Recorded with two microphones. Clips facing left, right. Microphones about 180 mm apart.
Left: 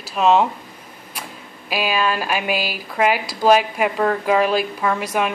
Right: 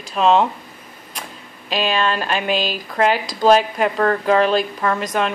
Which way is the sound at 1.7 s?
10° left (ahead or behind).